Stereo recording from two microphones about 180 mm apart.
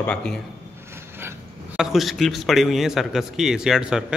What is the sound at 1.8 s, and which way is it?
A man's voice, centre (ahead or behind).